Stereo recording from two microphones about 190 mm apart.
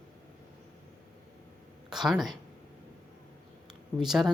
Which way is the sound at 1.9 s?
Centre (ahead or behind).